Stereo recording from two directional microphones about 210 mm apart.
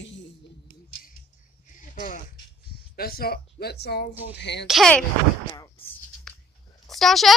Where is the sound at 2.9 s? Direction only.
45° left (ahead or behind).